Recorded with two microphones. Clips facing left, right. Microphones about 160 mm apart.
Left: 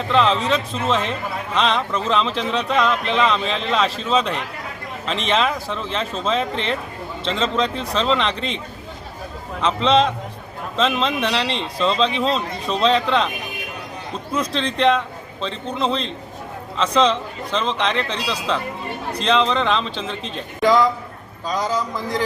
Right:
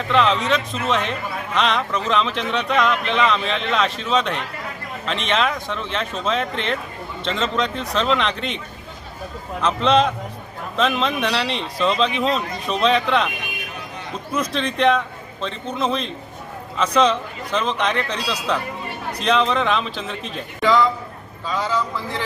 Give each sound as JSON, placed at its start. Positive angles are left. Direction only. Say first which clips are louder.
{"t": 0.1, "sound": "a man's voice", "louder": "even", "side_deg": 0}
{"t": 14.3, "sound": "a man's voice", "louder": "even", "side_deg": -5}
{"t": 20.6, "sound": "a man's voice", "louder": "left 1 dB", "side_deg": 40}